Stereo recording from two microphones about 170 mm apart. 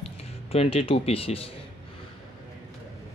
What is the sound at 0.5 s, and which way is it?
Speech, 35° left (ahead or behind).